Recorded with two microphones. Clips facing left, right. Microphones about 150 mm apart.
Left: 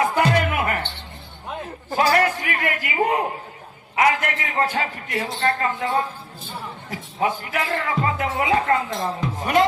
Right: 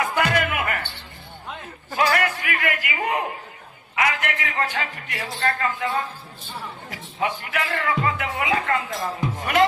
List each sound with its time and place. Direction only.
0.0 s music: 30° left (ahead or behind)
1.9 s a sound: 35° left (ahead or behind)
3.9 s a man's voice: 35° left (ahead or behind)